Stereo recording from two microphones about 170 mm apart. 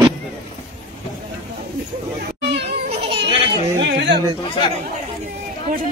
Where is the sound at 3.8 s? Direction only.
90° right.